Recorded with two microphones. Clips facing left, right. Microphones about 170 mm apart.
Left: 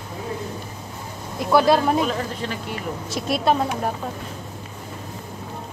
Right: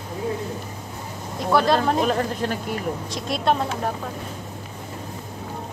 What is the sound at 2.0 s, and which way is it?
Speech, 45° right (ahead or behind).